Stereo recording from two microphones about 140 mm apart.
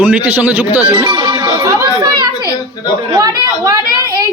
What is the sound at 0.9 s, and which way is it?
Music, 45° right (ahead or behind).